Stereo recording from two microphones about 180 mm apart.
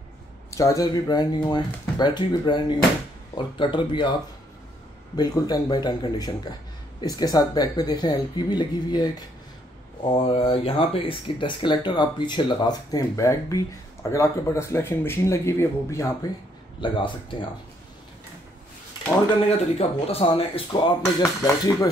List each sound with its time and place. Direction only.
0.5 s speech: 15° left (ahead or behind)
5.1 s speech: 20° left (ahead or behind)
10.1 s speech: 30° left (ahead or behind)
16.8 s speech: 25° left (ahead or behind)
19.5 s speech: 35° left (ahead or behind)